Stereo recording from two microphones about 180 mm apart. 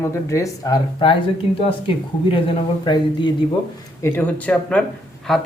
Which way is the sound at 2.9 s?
25° left (ahead or behind).